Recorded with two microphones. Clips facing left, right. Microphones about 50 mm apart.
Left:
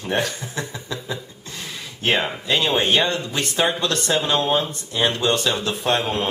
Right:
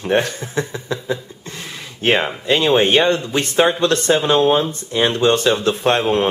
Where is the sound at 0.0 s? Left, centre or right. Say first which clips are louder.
Right 5 dB; right.